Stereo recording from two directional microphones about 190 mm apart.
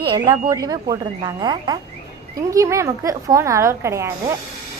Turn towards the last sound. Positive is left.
turn(degrees=-15)  # may be behind; listen again after turning